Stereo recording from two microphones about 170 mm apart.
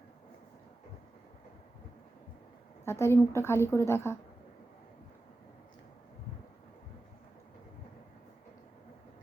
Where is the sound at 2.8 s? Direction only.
15° left (ahead or behind).